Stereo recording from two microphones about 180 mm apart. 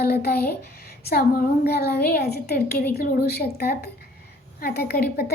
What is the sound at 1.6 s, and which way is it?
A child's voice, 65° left (ahead or behind).